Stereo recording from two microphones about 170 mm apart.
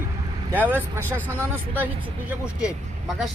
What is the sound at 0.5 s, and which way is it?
Speech, 10° right (ahead or behind).